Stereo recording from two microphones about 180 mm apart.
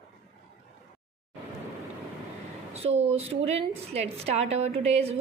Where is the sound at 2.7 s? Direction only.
35° right (ahead or behind).